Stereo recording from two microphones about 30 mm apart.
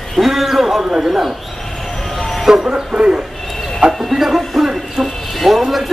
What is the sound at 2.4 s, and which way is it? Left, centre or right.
Speech, right.